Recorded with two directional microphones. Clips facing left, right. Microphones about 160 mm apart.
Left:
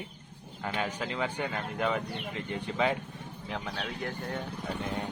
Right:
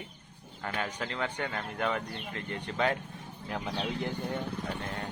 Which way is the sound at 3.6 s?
20° right (ahead or behind).